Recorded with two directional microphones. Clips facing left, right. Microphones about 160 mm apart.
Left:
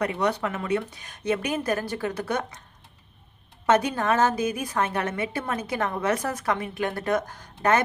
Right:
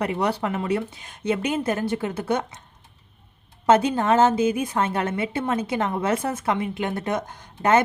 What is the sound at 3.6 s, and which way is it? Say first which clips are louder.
Speech: right 3 dB; 25° right (ahead or behind).